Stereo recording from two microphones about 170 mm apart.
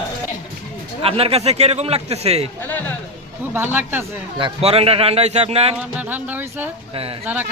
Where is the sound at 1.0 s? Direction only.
35° right (ahead or behind).